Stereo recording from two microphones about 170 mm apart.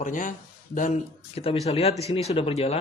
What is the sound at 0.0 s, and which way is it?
Speech, 50° left (ahead or behind).